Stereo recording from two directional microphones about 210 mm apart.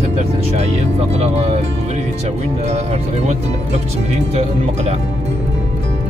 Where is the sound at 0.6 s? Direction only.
30° right (ahead or behind).